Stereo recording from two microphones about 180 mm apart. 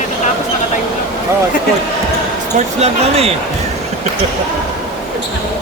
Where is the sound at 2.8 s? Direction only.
35° right (ahead or behind).